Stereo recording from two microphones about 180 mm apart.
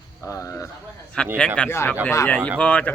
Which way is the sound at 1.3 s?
5° left (ahead or behind).